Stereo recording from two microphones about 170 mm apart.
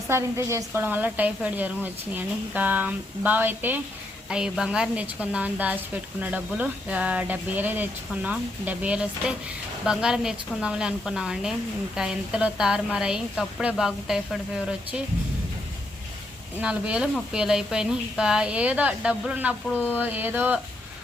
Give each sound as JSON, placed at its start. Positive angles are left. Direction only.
{"t": 0.1, "sound": "a woman's voice", "side_deg": -15}
{"t": 16.6, "sound": "a woman's voice", "side_deg": -5}